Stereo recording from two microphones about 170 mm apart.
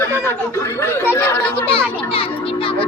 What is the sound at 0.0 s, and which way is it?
Speech, 15° left (ahead or behind).